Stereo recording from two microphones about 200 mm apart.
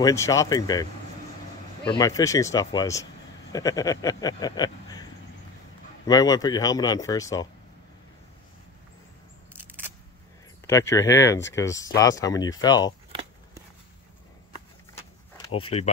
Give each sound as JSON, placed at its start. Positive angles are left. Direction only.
{"t": 0.0, "sound": "speech", "side_deg": 15}
{"t": 1.9, "sound": "speech", "side_deg": 20}
{"t": 6.0, "sound": "speech", "side_deg": 20}
{"t": 9.5, "sound": "single-lens reflex camera", "side_deg": -10}
{"t": 10.7, "sound": "speech", "side_deg": 15}
{"t": 15.5, "sound": "speech", "side_deg": 30}